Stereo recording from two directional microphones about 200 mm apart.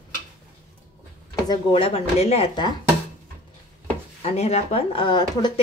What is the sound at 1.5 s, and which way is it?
Speech, 25° left (ahead or behind).